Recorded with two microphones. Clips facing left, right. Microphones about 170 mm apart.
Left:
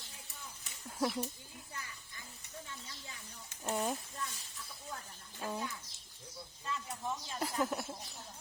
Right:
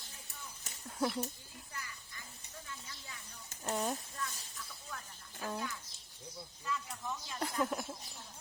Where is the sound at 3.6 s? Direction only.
5° left (ahead or behind).